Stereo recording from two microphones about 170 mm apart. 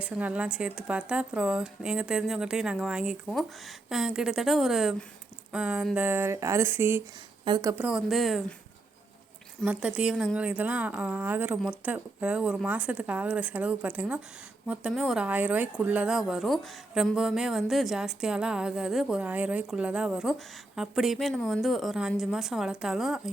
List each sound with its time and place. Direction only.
0.0 s a woman's voice: 10° right (ahead or behind)
7.4 s speech: 25° right (ahead or behind)
7.9 s a woman's voice: centre (ahead or behind)
9.6 s a woman's voice: 5° right (ahead or behind)